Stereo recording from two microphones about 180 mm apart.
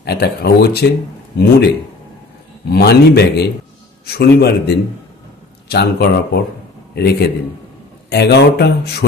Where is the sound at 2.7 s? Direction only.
60° left (ahead or behind).